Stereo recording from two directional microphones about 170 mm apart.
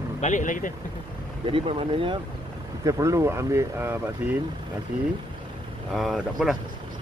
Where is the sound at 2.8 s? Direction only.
20° right (ahead or behind).